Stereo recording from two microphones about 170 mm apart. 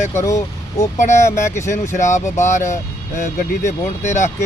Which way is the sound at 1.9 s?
45° left (ahead or behind).